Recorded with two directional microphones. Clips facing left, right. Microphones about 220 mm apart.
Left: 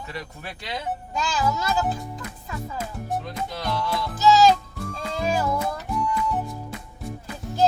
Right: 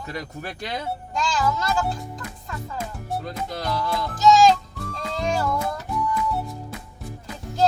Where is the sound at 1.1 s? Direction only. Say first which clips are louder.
Right 1 dB; 5° left (ahead or behind).